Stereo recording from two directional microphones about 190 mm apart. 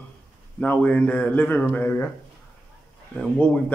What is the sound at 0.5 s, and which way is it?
A man's voice, 10° left (ahead or behind).